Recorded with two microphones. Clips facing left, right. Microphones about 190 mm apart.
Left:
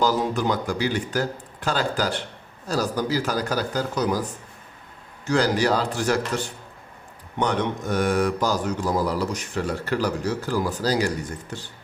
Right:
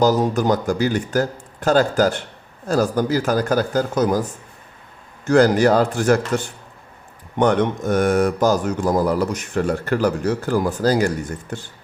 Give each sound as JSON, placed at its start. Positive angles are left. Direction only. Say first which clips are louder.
{"t": 0.0, "sound": "speech", "louder": "right 5 dB", "side_deg": -45}
{"t": 5.2, "sound": "speech", "louder": "right 7 dB", "side_deg": -50}